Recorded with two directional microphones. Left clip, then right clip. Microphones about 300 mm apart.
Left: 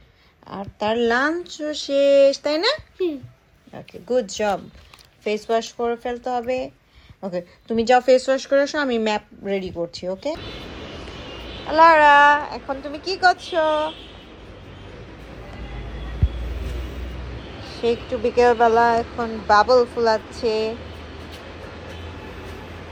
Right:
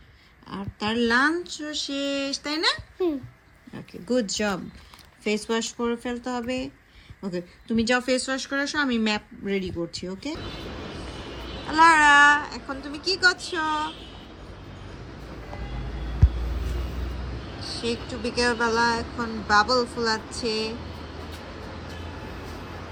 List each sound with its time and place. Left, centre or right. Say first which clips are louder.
0.4 s speech: left 6 dB; centre
11.7 s speech: left 4 dB; centre
18.3 s speech: left 8 dB; centre